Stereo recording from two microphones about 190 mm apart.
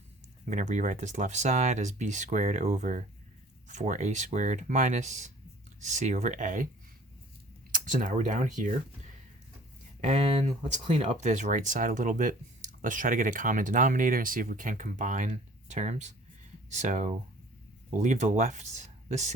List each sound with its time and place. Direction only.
0.5 s speech: 40° right (ahead or behind)
7.7 s speech: 45° right (ahead or behind)
10.0 s speech: 35° right (ahead or behind)